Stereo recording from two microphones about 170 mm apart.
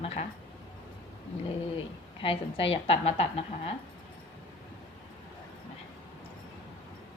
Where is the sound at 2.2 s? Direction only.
30° left (ahead or behind).